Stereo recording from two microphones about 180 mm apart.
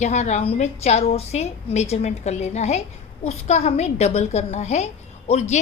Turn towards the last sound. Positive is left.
turn(degrees=40)  # may be behind; listen again after turning